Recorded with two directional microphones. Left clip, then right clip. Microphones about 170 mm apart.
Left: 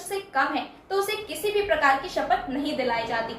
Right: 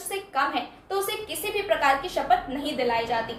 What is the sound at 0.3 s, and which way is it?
A woman's voice, 20° right (ahead or behind).